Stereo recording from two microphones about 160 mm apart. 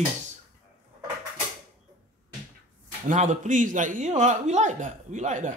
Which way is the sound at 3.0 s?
45° right (ahead or behind).